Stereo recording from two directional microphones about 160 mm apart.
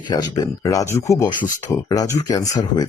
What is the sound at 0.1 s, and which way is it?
Speech, 20° left (ahead or behind).